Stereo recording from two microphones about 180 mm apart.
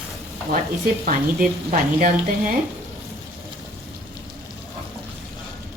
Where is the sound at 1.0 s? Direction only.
45° right (ahead or behind).